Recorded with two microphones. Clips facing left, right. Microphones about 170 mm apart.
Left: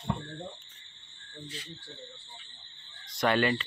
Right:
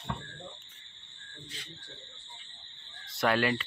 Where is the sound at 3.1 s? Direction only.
5° right (ahead or behind).